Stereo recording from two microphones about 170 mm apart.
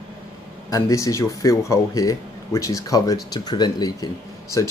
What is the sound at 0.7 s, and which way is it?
Speech, 20° left (ahead or behind).